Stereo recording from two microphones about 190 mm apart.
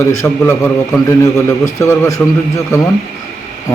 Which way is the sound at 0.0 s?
15° left (ahead or behind).